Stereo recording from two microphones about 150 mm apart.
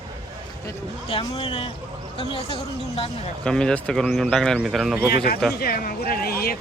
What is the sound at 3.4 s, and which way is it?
Speech, 5° left (ahead or behind).